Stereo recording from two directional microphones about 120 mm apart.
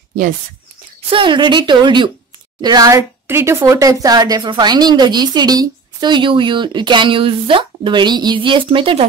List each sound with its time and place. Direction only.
1.1 s a woman's voice: 40° right (ahead or behind)
3.3 s a woman's voice: 20° right (ahead or behind); by 9.0 s 45° right (ahead or behind)